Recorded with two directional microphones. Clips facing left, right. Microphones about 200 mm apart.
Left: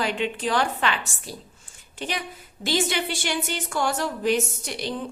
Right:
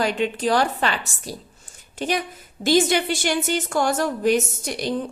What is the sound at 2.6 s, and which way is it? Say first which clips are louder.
A woman's voice: right 7 dB; 45° right (ahead or behind).